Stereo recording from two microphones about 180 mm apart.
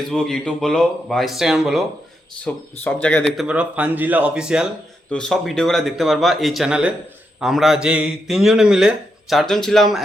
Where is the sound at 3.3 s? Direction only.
5° right (ahead or behind).